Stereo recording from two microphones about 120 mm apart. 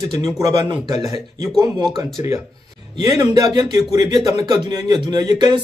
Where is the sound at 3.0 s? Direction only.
30° right (ahead or behind).